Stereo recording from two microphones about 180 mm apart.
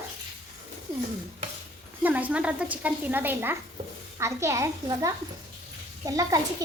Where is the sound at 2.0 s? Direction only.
10° right (ahead or behind).